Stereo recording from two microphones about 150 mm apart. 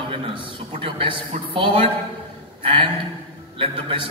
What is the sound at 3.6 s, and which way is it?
Speech, 35° right (ahead or behind).